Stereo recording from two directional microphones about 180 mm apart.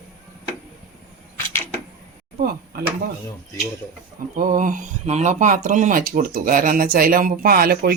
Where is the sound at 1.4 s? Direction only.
15° left (ahead or behind).